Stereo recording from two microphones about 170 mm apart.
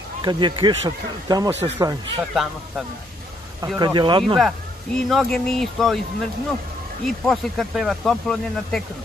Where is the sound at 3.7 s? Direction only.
25° right (ahead or behind).